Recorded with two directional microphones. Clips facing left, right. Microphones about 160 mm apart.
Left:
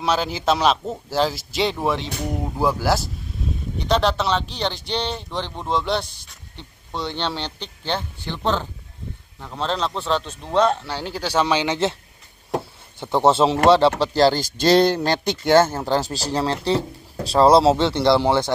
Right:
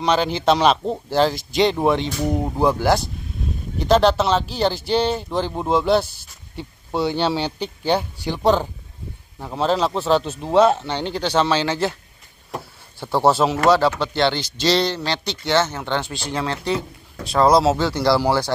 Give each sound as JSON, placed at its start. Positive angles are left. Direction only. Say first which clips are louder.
{"t": 0.0, "sound": "speech", "louder": "right 3 dB", "side_deg": 5}
{"t": 2.8, "sound": "speech", "louder": "right 3 dB", "side_deg": 0}
{"t": 13.0, "sound": "a man's voice", "louder": "left 1 dB", "side_deg": 20}